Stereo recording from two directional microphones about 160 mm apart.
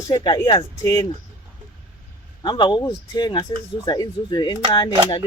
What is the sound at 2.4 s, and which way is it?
Speech, 30° left (ahead or behind).